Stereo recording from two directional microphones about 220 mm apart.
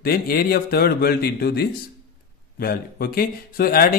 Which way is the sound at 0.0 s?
45° left (ahead or behind).